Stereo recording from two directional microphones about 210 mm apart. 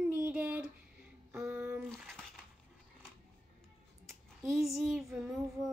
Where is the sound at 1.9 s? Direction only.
5° left (ahead or behind).